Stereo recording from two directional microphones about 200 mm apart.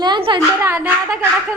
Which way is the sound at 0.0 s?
25° right (ahead or behind).